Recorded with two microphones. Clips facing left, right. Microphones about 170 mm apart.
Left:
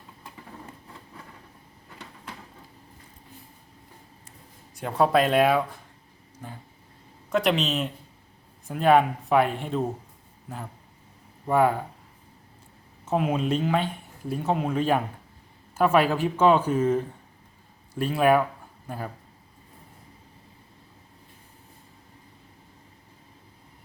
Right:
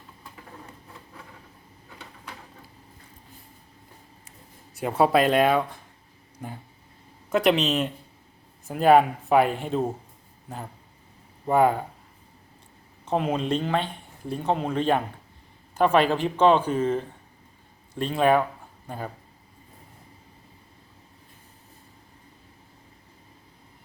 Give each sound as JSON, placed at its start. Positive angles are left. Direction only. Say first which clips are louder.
{"t": 4.7, "sound": "speech", "louder": "right 1 dB", "side_deg": -5}
{"t": 7.3, "sound": "speech", "louder": "right 2 dB", "side_deg": 0}
{"t": 11.4, "sound": "speech", "louder": "right 1 dB", "side_deg": 0}
{"t": 13.1, "sound": "speech", "louder": "even", "side_deg": 5}